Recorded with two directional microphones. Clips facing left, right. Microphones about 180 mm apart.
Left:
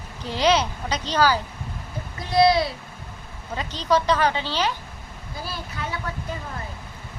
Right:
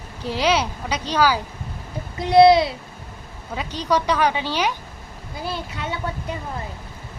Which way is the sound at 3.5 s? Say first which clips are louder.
Even; 10° right (ahead or behind).